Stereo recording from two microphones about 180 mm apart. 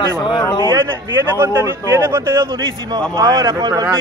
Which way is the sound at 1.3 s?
15° right (ahead or behind).